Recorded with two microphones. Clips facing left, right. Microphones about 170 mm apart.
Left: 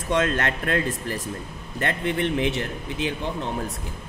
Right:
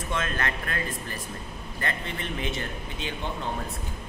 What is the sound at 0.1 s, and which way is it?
A man's voice, 90° left.